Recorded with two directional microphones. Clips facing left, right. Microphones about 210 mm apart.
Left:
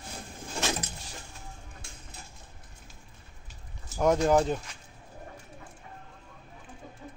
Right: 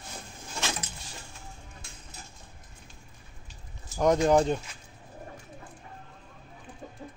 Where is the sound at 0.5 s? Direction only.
45° left (ahead or behind).